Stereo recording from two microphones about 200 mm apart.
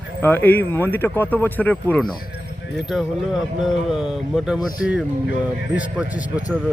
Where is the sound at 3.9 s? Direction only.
5° right (ahead or behind).